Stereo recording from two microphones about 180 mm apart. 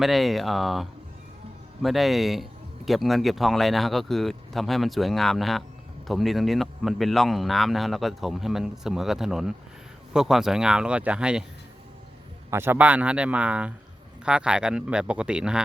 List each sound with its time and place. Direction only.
0.0 s speech: centre (ahead or behind)
12.5 s a man's voice: 15° right (ahead or behind)